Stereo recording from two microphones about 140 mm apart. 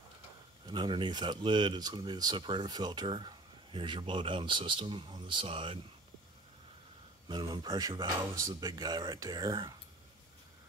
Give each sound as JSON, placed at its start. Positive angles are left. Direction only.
{"t": 0.7, "sound": "speech", "side_deg": -30}
{"t": 7.2, "sound": "speech", "side_deg": -35}